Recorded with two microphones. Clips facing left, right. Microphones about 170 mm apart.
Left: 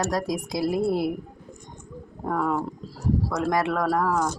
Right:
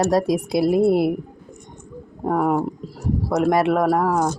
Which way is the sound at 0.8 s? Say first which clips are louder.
Right 7 dB; 60° right (ahead or behind).